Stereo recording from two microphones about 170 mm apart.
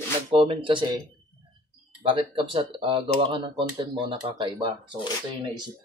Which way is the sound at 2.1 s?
30° right (ahead or behind).